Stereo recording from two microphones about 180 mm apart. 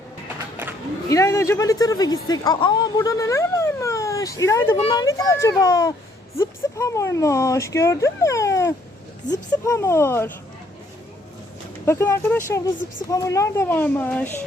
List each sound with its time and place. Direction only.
0.6 s a sound: 10° right (ahead or behind)
1.1 s a child's voice: 15° left (ahead or behind)
11.9 s speech: 15° left (ahead or behind)